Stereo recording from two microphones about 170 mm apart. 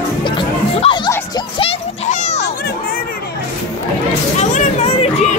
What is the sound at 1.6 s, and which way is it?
Children playing, 40° left (ahead or behind).